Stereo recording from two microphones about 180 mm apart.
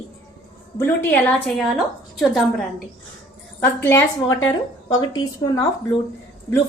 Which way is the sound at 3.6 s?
10° left (ahead or behind).